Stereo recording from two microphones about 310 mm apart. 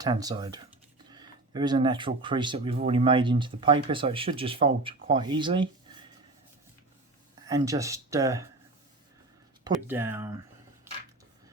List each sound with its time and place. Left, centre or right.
0.0 s speech: centre
7.4 s speech: centre
9.7 s speech: centre